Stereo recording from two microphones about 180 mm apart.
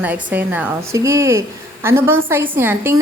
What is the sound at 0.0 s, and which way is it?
A woman's voice, 10° right (ahead or behind).